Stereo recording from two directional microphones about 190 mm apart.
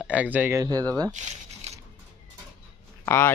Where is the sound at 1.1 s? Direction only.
40° right (ahead or behind).